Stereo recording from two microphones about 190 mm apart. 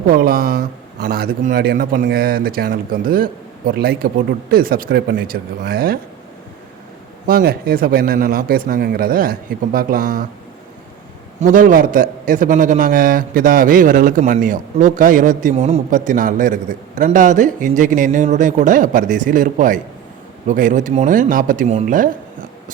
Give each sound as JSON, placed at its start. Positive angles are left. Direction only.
{"t": 0.1, "sound": "a man's voice", "side_deg": -50}
{"t": 7.3, "sound": "a man's voice", "side_deg": -50}
{"t": 11.3, "sound": "a man's voice", "side_deg": -45}